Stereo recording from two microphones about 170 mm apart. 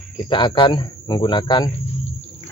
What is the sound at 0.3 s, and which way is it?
Speech, 30° left (ahead or behind).